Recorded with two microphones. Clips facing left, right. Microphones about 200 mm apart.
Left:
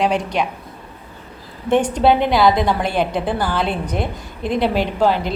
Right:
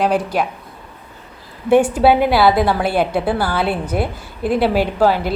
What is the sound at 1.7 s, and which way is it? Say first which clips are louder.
A woman's voice: right 3 dB; 5° right (ahead or behind).